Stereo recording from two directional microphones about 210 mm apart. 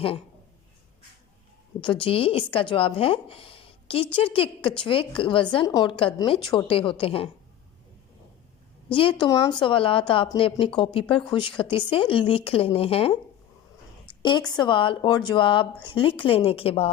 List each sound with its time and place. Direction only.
1.8 s speech: 25° left (ahead or behind)
8.9 s speech: 25° left (ahead or behind)
14.1 s a sound: 20° left (ahead or behind)
14.5 s speech: 20° left (ahead or behind)